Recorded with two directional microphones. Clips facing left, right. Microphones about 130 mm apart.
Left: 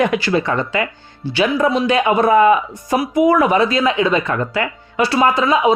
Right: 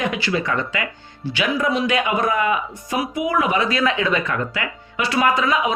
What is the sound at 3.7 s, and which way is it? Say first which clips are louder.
Speech: left 4 dB; 20° left (ahead or behind).